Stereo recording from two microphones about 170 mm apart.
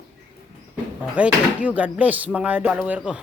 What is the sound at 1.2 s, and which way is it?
Speech, 10° right (ahead or behind).